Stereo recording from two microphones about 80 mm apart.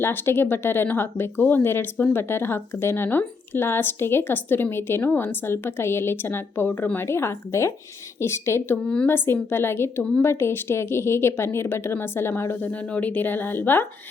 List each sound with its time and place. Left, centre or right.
0.0 s speech: left
12.7 s speech: centre